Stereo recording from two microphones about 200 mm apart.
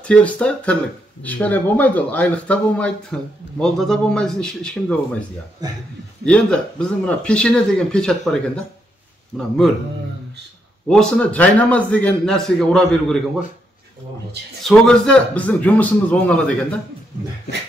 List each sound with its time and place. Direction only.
0.0 s speech: 5° left (ahead or behind)
5.6 s a man's voice: 20° right (ahead or behind)
6.2 s speech: 5° left (ahead or behind)
10.9 s speech: 5° left (ahead or behind)
14.6 s a man's voice: 5° left (ahead or behind)